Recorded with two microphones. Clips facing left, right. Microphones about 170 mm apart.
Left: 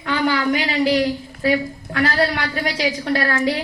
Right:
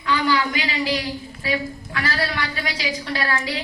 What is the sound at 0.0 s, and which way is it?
A woman's voice, 55° left (ahead or behind).